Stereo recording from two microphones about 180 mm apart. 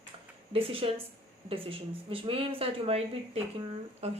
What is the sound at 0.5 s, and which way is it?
A woman's voice, 30° right (ahead or behind).